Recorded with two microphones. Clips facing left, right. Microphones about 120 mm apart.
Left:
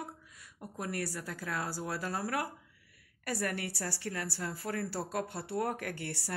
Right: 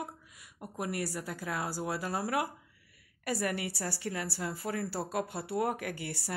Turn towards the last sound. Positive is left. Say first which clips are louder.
# right 1 dB
turn(degrees=-5)  # may be behind; listen again after turning